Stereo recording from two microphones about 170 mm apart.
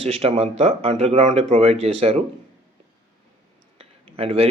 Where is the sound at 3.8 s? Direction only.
35° right (ahead or behind).